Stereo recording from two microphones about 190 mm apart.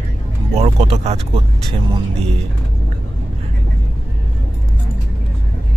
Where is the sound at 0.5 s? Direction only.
35° right (ahead or behind).